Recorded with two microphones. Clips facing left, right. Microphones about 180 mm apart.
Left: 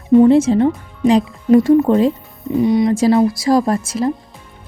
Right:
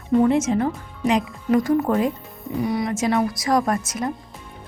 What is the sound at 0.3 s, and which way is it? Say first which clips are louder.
Speech: left 8 dB; 30° left (ahead or behind).